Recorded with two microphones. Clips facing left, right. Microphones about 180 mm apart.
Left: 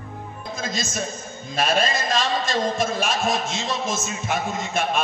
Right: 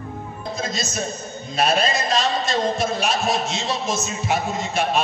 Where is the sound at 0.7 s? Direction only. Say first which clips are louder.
Right 1 dB; 50° left (ahead or behind).